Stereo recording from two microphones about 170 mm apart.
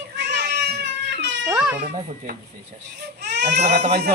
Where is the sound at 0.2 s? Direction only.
85° right.